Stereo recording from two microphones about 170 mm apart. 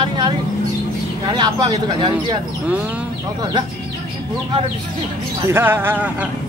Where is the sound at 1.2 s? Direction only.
25° right (ahead or behind).